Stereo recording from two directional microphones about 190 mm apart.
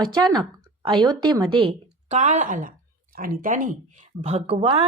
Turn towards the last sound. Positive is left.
turn(degrees=-30)  # may be behind; listen again after turning